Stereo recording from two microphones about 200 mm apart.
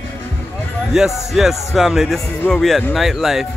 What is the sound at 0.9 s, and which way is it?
Speech, centre (ahead or behind).